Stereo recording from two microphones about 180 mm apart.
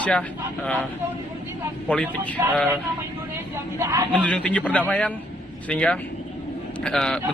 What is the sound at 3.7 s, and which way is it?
Speech, 15° right (ahead or behind).